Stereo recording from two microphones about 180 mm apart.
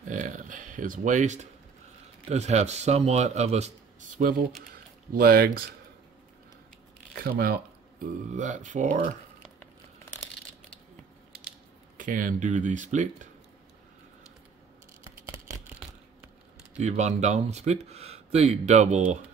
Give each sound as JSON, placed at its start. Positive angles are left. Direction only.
{"t": 0.1, "sound": "a sound", "side_deg": -45}
{"t": 2.2, "sound": "speech", "side_deg": -40}
{"t": 7.2, "sound": "speech", "side_deg": -60}
{"t": 8.3, "sound": "speech", "side_deg": -45}
{"t": 12.0, "sound": "speech", "side_deg": -50}
{"t": 15.2, "sound": "a sound", "side_deg": -15}
{"t": 16.7, "sound": "speech", "side_deg": -40}